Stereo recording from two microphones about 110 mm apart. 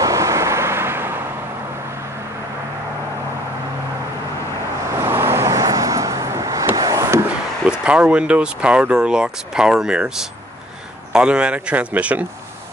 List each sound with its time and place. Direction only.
0.0 s vehicle: 30° right (ahead or behind)
4.9 s vehicle: 25° right (ahead or behind)
7.8 s speech: 10° right (ahead or behind)